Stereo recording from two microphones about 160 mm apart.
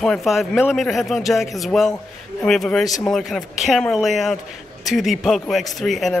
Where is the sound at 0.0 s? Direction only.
Centre (ahead or behind).